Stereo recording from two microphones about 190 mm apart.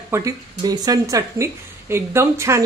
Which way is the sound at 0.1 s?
20° right (ahead or behind).